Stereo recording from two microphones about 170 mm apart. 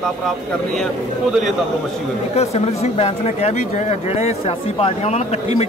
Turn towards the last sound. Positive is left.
turn(degrees=40)  # may be behind; listen again after turning